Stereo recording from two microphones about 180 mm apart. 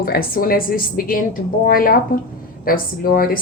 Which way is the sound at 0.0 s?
55° left (ahead or behind).